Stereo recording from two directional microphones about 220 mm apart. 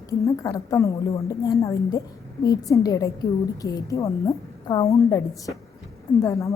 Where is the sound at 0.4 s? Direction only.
15° left (ahead or behind).